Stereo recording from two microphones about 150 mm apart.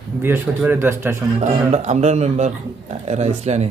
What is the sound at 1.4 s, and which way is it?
Speech, 50° right (ahead or behind).